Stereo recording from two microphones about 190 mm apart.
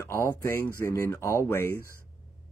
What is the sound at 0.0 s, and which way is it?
Speech, 15° left (ahead or behind).